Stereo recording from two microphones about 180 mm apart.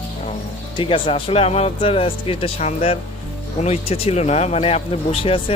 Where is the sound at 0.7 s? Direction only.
30° left (ahead or behind).